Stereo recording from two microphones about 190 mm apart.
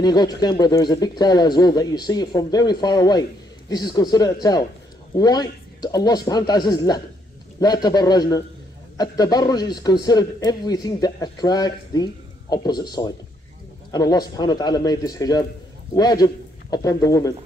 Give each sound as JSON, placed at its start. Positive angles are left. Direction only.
{"t": 0.0, "sound": "speech", "side_deg": 20}